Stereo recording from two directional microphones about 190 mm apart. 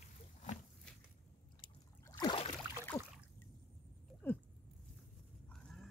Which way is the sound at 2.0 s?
25° left (ahead or behind).